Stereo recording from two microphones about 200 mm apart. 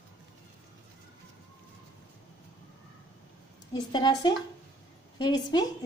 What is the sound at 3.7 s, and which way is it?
A woman's voice, 20° left (ahead or behind).